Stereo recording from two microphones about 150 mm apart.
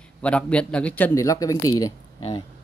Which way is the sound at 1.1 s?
20° left (ahead or behind).